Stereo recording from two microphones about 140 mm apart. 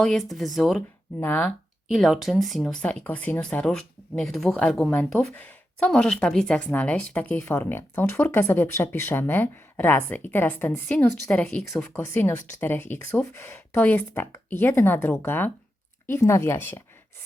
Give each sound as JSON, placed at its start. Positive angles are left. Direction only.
{"t": 0.0, "sound": "speech", "side_deg": 0}
{"t": 1.2, "sound": "speech", "side_deg": 10}
{"t": 1.9, "sound": "speech", "side_deg": 0}
{"t": 11.9, "sound": "speech", "side_deg": 15}